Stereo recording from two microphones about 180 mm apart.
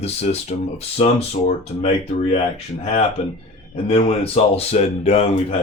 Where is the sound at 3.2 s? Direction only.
35° left (ahead or behind).